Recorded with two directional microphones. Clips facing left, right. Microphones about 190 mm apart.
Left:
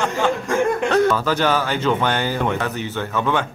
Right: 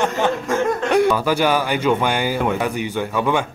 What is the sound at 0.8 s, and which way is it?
Speech, 15° right (ahead or behind).